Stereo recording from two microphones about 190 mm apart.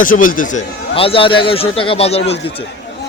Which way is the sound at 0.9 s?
30° left (ahead or behind).